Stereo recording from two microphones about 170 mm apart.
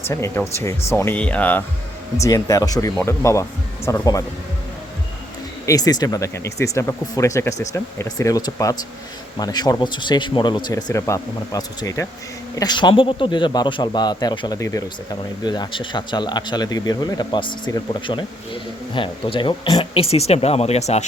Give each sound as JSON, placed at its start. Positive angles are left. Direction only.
{"t": 0.1, "sound": "a man's voice", "side_deg": 15}
{"t": 5.6, "sound": "a man's voice", "side_deg": 20}